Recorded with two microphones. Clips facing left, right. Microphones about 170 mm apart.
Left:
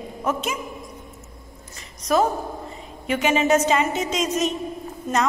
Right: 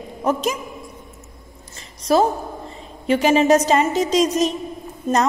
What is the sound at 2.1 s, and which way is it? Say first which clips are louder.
A woman's voice: right 3 dB; 30° right (ahead or behind).